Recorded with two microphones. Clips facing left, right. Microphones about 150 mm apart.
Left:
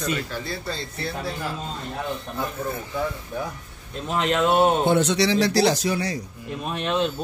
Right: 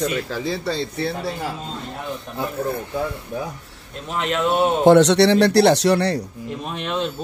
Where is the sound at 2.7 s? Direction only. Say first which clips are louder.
Right 4 dB; 60° right (ahead or behind).